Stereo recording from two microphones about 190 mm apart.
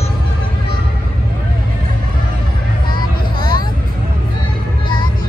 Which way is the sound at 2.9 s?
25° left (ahead or behind).